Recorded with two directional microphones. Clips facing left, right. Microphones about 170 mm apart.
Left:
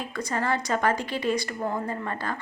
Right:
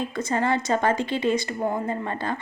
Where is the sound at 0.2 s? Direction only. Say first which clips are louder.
Right 3 dB; 25° right (ahead or behind).